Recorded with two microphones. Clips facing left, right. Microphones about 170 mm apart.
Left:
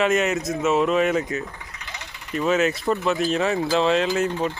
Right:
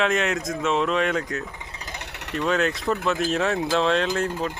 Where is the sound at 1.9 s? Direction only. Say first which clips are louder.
Left 2 dB; 70° right (ahead or behind).